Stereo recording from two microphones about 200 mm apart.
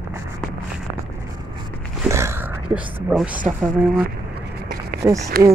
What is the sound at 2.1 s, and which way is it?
Speech, 15° right (ahead or behind).